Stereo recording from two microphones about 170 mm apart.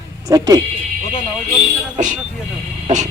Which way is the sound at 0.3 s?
20° right (ahead or behind).